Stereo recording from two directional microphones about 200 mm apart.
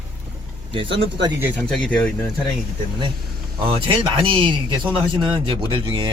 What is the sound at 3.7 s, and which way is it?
Speech, 25° right (ahead or behind).